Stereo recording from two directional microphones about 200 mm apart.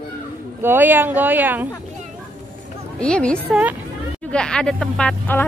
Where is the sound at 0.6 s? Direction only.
10° right (ahead or behind).